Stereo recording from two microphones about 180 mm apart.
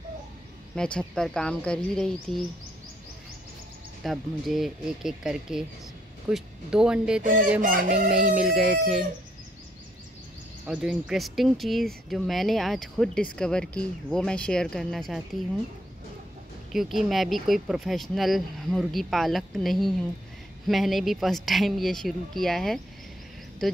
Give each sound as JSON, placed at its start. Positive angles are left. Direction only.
{"t": 0.7, "sound": "speech", "side_deg": 5}
{"t": 4.0, "sound": "speech", "side_deg": 0}
{"t": 7.6, "sound": "chicken", "side_deg": -50}
{"t": 8.4, "sound": "speech", "side_deg": -5}
{"t": 10.7, "sound": "speech", "side_deg": -5}
{"t": 16.7, "sound": "speech", "side_deg": 0}